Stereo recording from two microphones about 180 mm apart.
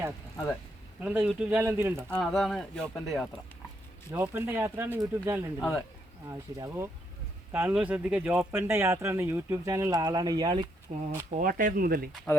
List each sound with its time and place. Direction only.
1.0 s speech: 10° right (ahead or behind)
2.0 s speech: 5° left (ahead or behind)
4.1 s speech: 15° right (ahead or behind)
5.5 s speech: 15° left (ahead or behind)
6.2 s speech: 15° right (ahead or behind); by 11.0 s 35° right (ahead or behind)
11.3 s speech: 50° right (ahead or behind)